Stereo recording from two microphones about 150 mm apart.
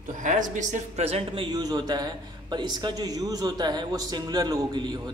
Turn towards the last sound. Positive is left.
turn(degrees=-30)  # may be behind; listen again after turning